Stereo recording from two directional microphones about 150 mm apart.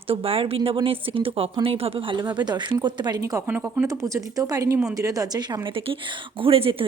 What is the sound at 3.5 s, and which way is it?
Speech, 10° right (ahead or behind).